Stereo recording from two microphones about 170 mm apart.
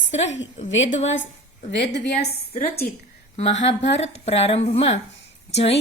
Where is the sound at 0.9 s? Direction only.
40° left (ahead or behind).